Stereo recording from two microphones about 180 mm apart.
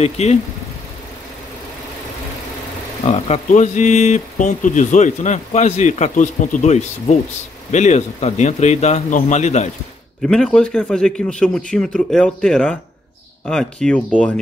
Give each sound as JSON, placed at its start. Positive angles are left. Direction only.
{"t": 0.0, "sound": "speech", "side_deg": 35}
{"t": 3.1, "sound": "speech", "side_deg": 40}
{"t": 10.2, "sound": "a man's voice", "side_deg": 5}